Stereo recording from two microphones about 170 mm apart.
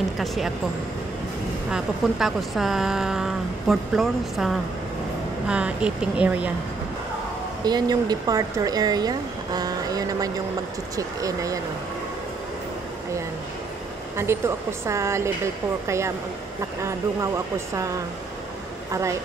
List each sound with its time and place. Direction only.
1.7 s speech: centre (ahead or behind)
7.6 s speech: 25° right (ahead or behind)
14.1 s speech: 15° right (ahead or behind)